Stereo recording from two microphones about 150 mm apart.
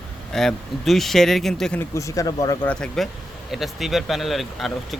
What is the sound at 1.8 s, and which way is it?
Speech, 20° left (ahead or behind).